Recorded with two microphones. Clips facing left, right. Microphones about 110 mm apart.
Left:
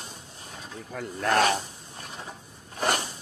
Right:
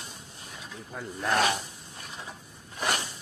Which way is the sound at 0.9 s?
65° left (ahead or behind).